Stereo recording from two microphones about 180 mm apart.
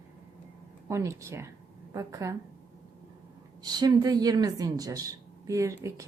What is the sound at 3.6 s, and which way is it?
Speech, 25° right (ahead or behind).